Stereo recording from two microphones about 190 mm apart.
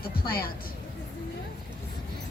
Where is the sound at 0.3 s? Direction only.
55° left (ahead or behind).